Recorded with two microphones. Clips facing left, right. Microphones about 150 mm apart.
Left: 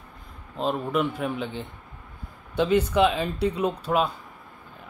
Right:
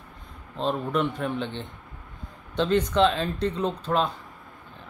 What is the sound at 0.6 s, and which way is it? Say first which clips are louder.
Speech: even; 5° left (ahead or behind).